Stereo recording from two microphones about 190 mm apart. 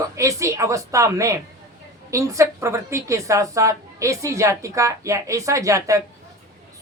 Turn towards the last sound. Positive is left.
turn(degrees=-15)  # may be behind; listen again after turning